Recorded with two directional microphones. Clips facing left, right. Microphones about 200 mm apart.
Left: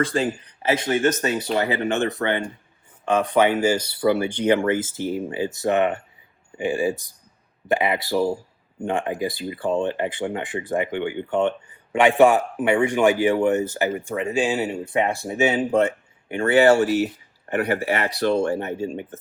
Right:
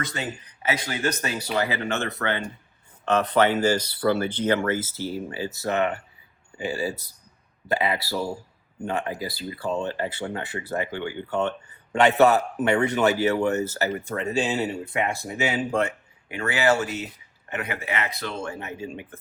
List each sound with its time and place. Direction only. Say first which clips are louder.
0.0 s speech: left 9 dB; 30° left (ahead or behind)
11.9 s speech: left 2 dB; 10° left (ahead or behind); by 19.2 s 30° left (ahead or behind)